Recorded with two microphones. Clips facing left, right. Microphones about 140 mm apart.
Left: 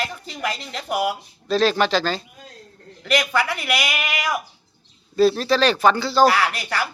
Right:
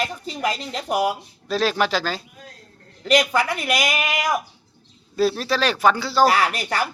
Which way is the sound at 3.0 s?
40° right (ahead or behind).